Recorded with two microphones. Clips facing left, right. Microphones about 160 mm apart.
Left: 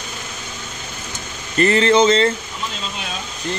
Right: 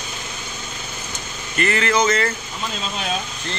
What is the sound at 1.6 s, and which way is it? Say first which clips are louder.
Speech: left 6 dB; 30° left (ahead or behind).